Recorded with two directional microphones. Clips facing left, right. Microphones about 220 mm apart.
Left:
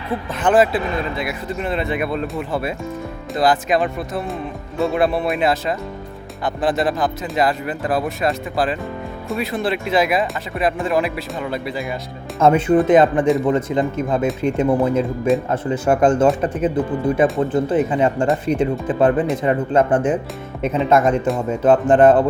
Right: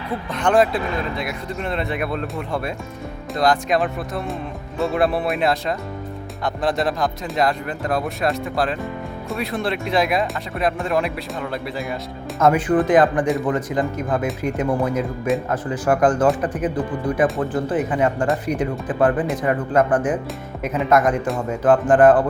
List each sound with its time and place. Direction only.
0.3 s speech: 5° left (ahead or behind)
12.4 s speech: 25° left (ahead or behind)